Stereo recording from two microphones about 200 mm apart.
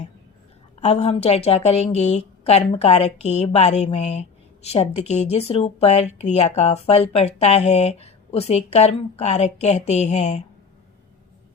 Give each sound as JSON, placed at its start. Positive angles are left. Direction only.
{"t": 0.8, "sound": "a woman's voice", "side_deg": 30}